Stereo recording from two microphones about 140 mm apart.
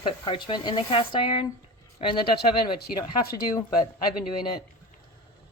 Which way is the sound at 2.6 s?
30° left (ahead or behind).